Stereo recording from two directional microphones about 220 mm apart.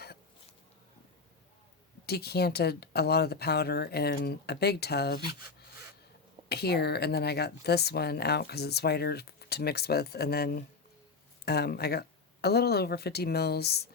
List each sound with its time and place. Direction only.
2.0 s speech: 45° left (ahead or behind)
6.5 s speech: 45° left (ahead or behind)